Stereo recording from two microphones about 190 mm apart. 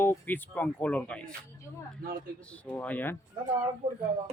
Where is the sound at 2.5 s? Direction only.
10° left (ahead or behind).